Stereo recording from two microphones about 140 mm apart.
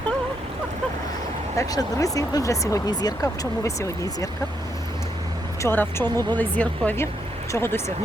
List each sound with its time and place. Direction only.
1.5 s speech: 25° left (ahead or behind)
5.6 s speech: 15° left (ahead or behind)